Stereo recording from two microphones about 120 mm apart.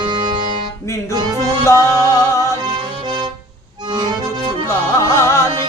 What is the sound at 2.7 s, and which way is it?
Accordion, 40° right (ahead or behind).